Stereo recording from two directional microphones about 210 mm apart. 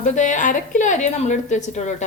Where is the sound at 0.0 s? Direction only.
35° left (ahead or behind).